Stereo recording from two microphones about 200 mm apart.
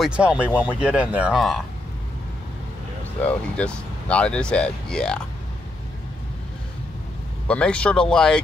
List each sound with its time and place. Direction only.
0.0 s speech: 5° right (ahead or behind)
3.3 s speech: 5° left (ahead or behind)
7.4 s speech: 5° left (ahead or behind)